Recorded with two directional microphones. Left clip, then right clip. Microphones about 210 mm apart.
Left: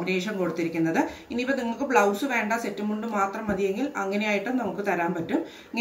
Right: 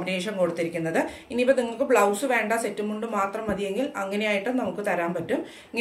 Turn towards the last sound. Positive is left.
turn(degrees=-45)  # may be behind; listen again after turning